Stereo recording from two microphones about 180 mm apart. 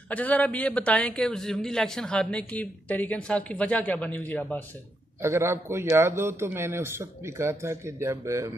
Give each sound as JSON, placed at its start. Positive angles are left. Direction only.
{"t": 0.1, "sound": "a man's voice", "side_deg": 10}
{"t": 5.2, "sound": "a man's voice", "side_deg": -15}